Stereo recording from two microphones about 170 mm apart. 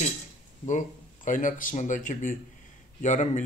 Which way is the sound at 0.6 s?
45° left (ahead or behind).